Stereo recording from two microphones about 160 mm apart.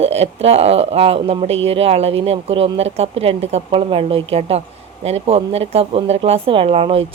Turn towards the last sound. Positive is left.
turn(degrees=-35)  # may be behind; listen again after turning